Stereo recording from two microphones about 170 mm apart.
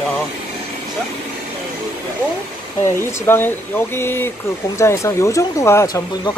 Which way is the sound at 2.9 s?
15° left (ahead or behind).